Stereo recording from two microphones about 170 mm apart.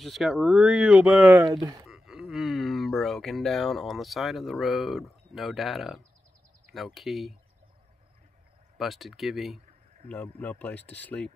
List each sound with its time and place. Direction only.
0.0 s speech: centre (ahead or behind)
1.4 s speech: 25° right (ahead or behind)
1.9 s speech: 5° right (ahead or behind)
8.7 s speech: centre (ahead or behind)